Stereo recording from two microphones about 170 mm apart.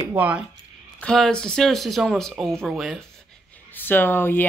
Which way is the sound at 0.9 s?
5° left (ahead or behind).